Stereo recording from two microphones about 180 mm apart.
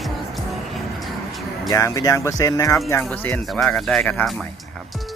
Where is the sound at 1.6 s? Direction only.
20° left (ahead or behind); by 4.4 s centre (ahead or behind).